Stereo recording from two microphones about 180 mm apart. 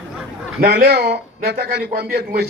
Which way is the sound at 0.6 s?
60° right (ahead or behind).